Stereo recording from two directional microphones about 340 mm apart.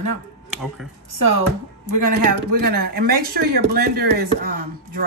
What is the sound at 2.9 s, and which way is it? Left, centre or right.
Speech, right.